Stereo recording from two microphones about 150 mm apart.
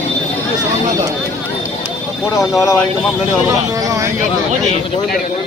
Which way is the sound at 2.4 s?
Centre (ahead or behind).